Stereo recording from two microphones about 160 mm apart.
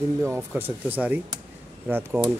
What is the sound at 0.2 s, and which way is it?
Speech, 15° right (ahead or behind).